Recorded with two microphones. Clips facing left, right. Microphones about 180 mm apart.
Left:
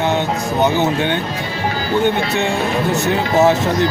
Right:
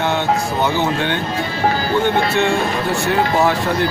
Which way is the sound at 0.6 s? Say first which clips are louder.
Left 5 dB; 20° left (ahead or behind).